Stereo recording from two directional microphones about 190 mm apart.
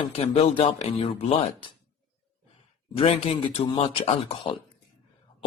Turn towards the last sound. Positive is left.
turn(degrees=30)  # may be behind; listen again after turning